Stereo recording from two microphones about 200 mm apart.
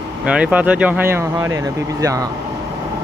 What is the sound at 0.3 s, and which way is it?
Speech, 5° right (ahead or behind).